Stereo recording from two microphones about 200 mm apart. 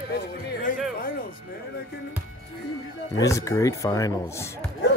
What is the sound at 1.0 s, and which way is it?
Music, 45° left (ahead or behind).